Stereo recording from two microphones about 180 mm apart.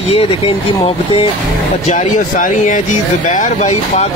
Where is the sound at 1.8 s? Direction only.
45° left (ahead or behind).